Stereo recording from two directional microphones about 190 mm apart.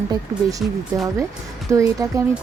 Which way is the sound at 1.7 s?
15° right (ahead or behind).